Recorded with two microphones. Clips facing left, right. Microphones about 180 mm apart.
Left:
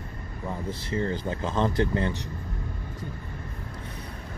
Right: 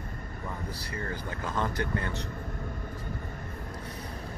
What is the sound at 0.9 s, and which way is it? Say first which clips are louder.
Speech: left 9 dB; 25° left (ahead or behind).